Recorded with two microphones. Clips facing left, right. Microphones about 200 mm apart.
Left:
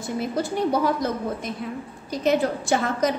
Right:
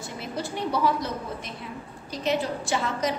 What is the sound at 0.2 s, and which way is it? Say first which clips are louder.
A woman's voice: left 6 dB; 45° left (ahead or behind).